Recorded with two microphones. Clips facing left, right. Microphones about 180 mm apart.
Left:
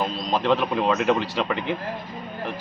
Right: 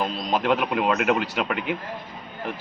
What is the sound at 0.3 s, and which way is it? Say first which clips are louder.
Speech: left 1 dB; 10° right (ahead or behind).